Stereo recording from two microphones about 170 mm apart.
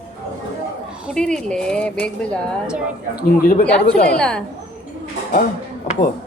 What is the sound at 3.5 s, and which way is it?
Speech, 70° left (ahead or behind).